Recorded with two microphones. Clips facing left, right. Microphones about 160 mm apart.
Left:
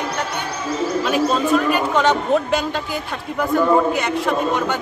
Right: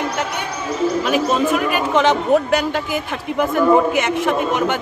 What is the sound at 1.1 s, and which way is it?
A man's voice, 10° right (ahead or behind).